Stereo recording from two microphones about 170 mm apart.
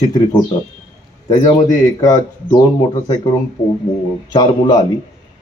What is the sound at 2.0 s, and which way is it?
A man's voice, 25° left (ahead or behind).